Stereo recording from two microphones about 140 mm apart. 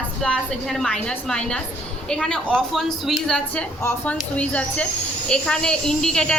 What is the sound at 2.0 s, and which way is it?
A woman's voice, 5° left (ahead or behind).